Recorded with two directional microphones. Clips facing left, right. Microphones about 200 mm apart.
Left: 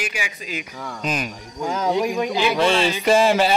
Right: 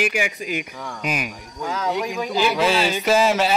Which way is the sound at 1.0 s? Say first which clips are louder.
Left 1 dB; 10° right (ahead or behind).